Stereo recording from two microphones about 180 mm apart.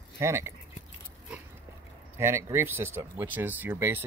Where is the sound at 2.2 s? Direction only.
15° right (ahead or behind).